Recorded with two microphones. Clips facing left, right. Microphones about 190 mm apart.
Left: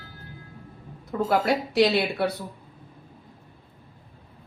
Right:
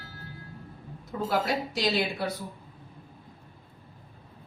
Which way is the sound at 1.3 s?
65° left (ahead or behind).